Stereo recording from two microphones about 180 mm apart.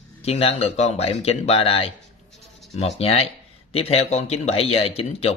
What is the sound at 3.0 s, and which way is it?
Speech, 35° left (ahead or behind).